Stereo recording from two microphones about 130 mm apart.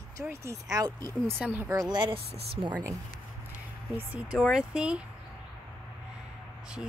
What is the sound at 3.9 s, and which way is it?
Speech, 15° right (ahead or behind).